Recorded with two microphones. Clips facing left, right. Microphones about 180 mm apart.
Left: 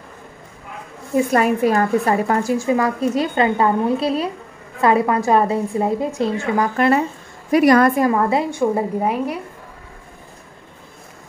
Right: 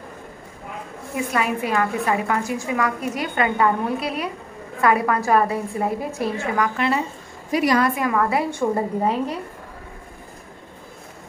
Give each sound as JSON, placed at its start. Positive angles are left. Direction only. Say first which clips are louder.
{"t": 1.1, "sound": "a woman's voice", "louder": "left 7 dB", "side_deg": 40}
{"t": 6.8, "sound": "a woman's voice", "louder": "left 6 dB", "side_deg": 55}
{"t": 8.5, "sound": "a woman's voice", "louder": "left 3 dB", "side_deg": 10}